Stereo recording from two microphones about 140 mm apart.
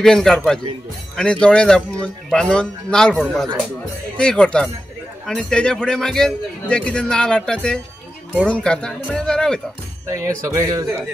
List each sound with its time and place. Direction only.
0.0 s a man's voice: 5° left (ahead or behind)
10.0 s speech: 20° right (ahead or behind)